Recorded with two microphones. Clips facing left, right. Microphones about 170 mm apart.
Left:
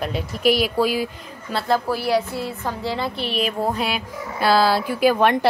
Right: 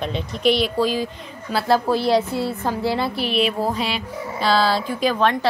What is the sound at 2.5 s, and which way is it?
Speech, 15° right (ahead or behind).